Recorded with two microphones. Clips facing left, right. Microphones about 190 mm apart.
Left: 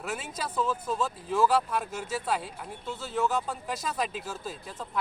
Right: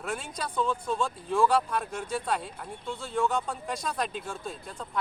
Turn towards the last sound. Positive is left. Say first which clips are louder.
# even
turn(degrees=5)  # may be behind; listen again after turning